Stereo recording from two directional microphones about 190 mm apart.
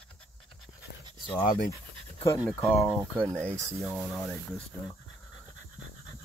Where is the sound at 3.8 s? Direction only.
Centre (ahead or behind).